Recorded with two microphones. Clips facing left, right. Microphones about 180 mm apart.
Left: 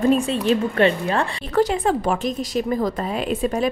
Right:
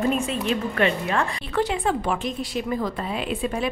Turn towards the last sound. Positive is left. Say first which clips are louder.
# left 4 dB
turn(degrees=40)  # may be behind; listen again after turning